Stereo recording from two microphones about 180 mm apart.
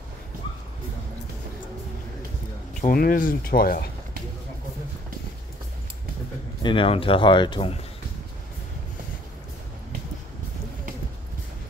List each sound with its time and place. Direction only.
2.9 s speech: 50° left (ahead or behind)
6.6 s speech: 30° left (ahead or behind)